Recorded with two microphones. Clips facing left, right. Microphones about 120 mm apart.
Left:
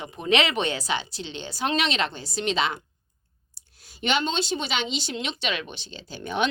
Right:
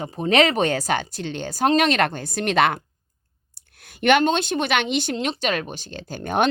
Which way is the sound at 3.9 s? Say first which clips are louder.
Right 8 dB; 55° right (ahead or behind).